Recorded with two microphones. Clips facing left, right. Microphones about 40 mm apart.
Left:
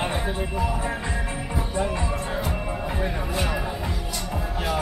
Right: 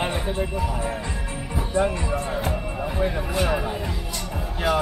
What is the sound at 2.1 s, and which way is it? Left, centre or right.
Music, centre.